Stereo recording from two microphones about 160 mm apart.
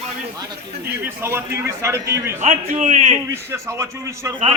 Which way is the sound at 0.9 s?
15° right (ahead or behind).